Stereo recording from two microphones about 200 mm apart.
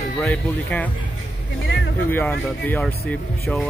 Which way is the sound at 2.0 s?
10° left (ahead or behind).